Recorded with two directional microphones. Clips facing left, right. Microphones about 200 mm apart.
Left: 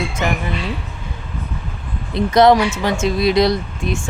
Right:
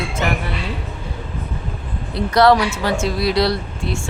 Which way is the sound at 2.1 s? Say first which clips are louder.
Left 2 dB; 20° left (ahead or behind).